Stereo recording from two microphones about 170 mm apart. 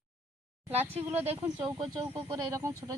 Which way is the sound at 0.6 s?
10° right (ahead or behind).